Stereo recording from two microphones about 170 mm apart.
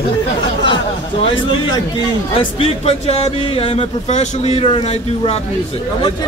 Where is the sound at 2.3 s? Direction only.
35° left (ahead or behind).